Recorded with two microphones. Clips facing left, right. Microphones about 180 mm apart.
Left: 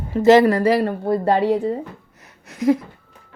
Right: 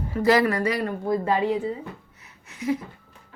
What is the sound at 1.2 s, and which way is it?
Speech, 70° left (ahead or behind).